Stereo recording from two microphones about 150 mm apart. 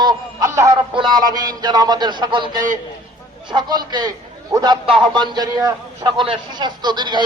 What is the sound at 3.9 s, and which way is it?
Music, 30° right (ahead or behind).